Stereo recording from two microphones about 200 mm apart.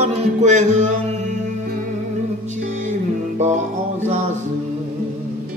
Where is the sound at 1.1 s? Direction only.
35° right (ahead or behind).